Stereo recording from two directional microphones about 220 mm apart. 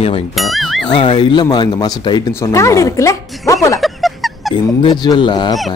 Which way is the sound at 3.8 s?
Centre (ahead or behind).